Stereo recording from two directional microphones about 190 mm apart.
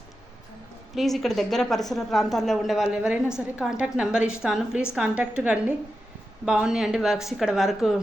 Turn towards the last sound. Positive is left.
turn(degrees=0)  # may be behind; listen again after turning